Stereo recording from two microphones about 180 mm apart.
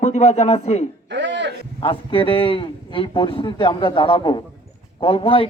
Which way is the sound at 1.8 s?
30° left (ahead or behind).